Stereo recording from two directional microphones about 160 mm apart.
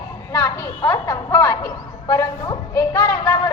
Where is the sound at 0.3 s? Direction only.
20° left (ahead or behind).